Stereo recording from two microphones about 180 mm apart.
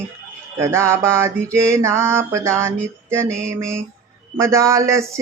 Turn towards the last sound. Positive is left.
turn(degrees=-15)  # may be behind; listen again after turning